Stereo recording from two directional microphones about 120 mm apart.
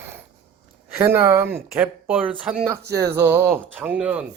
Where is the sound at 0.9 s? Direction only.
20° right (ahead or behind).